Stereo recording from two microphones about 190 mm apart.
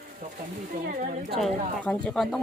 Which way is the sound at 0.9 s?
50° right (ahead or behind).